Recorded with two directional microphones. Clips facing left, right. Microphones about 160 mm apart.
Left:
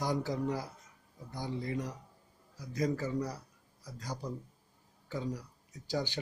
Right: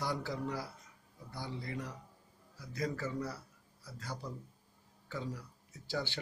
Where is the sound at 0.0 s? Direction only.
15° left (ahead or behind).